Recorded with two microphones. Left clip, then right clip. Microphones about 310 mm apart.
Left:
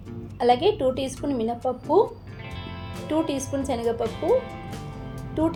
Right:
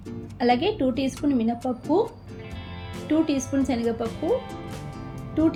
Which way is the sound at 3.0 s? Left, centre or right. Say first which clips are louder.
Right 2 dB; centre.